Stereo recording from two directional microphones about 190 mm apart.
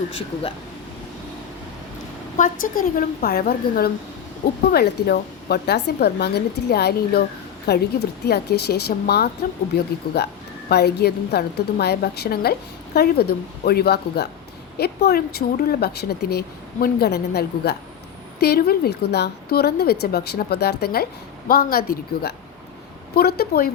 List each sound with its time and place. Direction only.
2.4 s a woman's voice: 45° left (ahead or behind)